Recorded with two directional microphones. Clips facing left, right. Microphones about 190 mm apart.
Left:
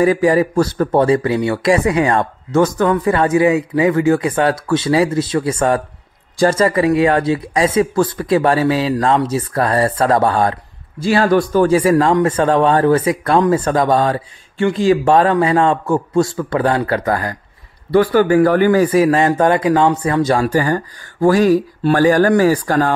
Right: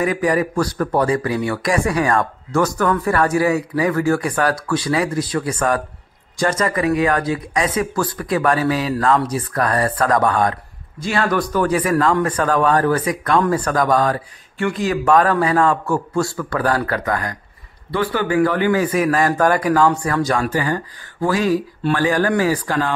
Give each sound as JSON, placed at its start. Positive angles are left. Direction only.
{"t": 0.0, "sound": "speech", "side_deg": 30}
{"t": 20.4, "sound": "speech", "side_deg": 40}